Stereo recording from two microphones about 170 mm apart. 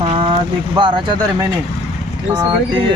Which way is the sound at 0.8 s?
30° right (ahead or behind).